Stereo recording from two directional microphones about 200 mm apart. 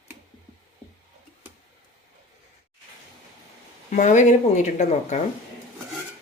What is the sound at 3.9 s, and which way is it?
Speech, 40° left (ahead or behind).